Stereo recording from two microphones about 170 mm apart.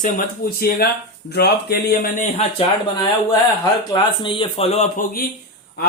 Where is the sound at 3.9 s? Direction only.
30° left (ahead or behind).